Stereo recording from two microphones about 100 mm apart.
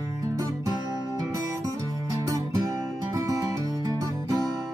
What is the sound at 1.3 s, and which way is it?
Music, 35° right (ahead or behind).